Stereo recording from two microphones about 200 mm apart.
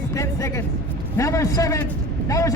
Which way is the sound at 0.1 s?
15° left (ahead or behind).